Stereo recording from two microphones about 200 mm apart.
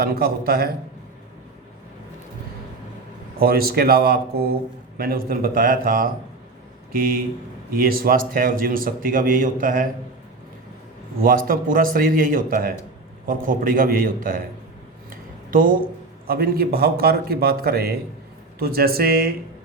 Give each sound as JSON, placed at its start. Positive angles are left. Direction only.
{"t": 0.0, "sound": "a man's voice", "side_deg": -50}
{"t": 3.4, "sound": "a man's voice", "side_deg": -50}
{"t": 11.2, "sound": "a man's voice", "side_deg": -45}
{"t": 15.4, "sound": "a man's voice", "side_deg": -45}